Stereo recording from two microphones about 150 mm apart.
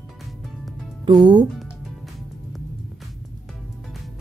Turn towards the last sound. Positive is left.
turn(degrees=0)  # may be behind; listen again after turning